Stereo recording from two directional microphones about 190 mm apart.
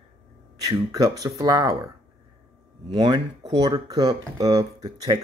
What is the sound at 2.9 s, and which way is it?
Speech, 20° right (ahead or behind).